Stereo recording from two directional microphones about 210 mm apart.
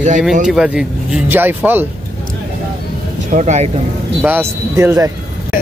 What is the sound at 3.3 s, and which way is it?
Speech, 35° right (ahead or behind).